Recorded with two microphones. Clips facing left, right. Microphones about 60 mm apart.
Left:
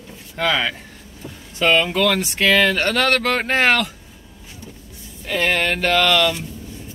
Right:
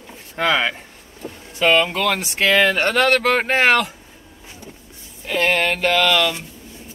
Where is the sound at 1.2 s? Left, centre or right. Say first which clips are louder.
Right 3 dB; right.